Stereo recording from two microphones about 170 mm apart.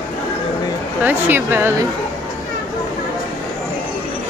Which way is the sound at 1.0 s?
10° right (ahead or behind).